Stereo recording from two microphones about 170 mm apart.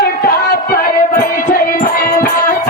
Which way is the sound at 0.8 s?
55° left (ahead or behind).